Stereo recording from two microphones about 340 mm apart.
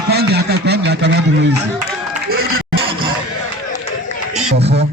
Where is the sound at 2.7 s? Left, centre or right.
Centre.